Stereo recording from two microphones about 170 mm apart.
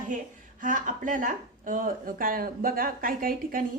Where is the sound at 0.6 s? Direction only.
50° right (ahead or behind).